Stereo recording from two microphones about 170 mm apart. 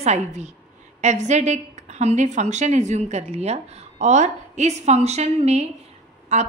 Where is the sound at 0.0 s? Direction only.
40° right (ahead or behind).